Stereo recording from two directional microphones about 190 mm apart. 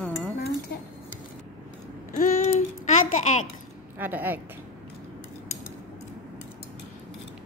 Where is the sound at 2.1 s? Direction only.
40° left (ahead or behind).